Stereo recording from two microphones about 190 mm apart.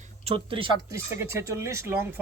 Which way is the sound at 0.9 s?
15° right (ahead or behind).